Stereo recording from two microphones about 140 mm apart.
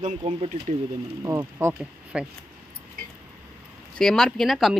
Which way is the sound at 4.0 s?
5° left (ahead or behind).